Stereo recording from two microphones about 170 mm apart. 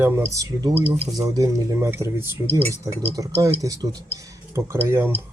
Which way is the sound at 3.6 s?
20° right (ahead or behind).